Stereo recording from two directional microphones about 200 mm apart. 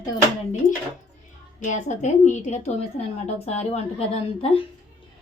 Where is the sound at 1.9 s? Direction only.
35° left (ahead or behind).